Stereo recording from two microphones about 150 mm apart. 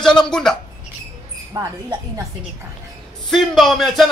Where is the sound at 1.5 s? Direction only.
20° right (ahead or behind).